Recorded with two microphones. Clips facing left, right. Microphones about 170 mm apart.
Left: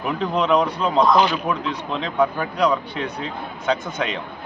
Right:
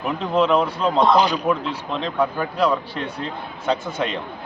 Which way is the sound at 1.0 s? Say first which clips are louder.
Right 1 dB; 35° right (ahead or behind).